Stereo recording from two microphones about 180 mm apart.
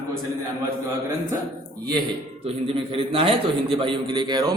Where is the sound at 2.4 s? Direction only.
30° right (ahead or behind).